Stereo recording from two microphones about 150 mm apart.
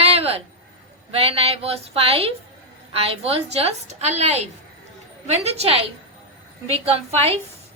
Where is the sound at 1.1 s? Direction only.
40° right (ahead or behind).